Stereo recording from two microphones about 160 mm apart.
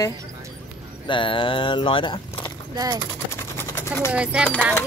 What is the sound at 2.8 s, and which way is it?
Speech, 25° right (ahead or behind).